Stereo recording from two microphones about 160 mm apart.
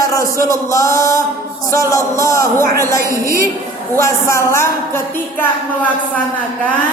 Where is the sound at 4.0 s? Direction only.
20° left (ahead or behind).